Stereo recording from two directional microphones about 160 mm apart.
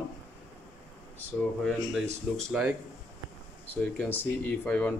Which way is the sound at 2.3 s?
Centre (ahead or behind).